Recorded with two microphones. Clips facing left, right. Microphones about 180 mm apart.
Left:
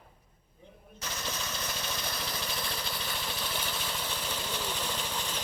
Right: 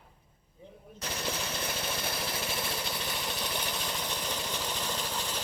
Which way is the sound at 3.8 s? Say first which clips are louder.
Right 1 dB; 15° right (ahead or behind).